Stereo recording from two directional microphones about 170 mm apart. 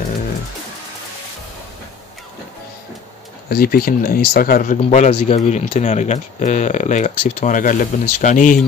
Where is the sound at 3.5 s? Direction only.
60° left (ahead or behind).